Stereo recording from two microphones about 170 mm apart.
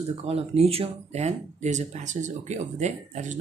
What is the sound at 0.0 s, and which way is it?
Speech, 35° right (ahead or behind).